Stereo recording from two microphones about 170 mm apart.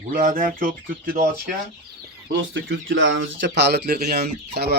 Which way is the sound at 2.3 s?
90° right.